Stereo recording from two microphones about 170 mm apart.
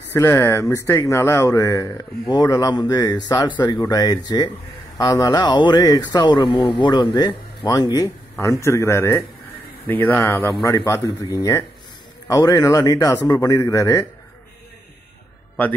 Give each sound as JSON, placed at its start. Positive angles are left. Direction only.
{"t": 0.1, "sound": "speech", "side_deg": 15}